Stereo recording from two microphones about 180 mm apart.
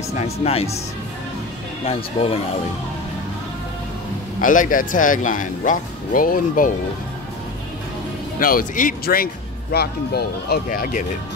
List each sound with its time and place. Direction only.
0.2 s speech: 35° left (ahead or behind)
1.9 s speech: 35° left (ahead or behind)
4.4 s speech: 50° left (ahead or behind)
8.4 s speech: 50° left (ahead or behind)